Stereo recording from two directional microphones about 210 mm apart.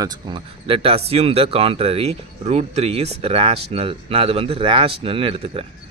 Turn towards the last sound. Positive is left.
turn(degrees=-25)  # may be behind; listen again after turning